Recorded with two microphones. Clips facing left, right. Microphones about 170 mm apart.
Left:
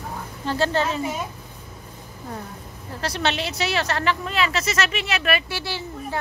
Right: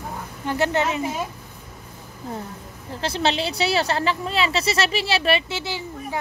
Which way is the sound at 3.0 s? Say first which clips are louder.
Right 2 dB; 30° right (ahead or behind).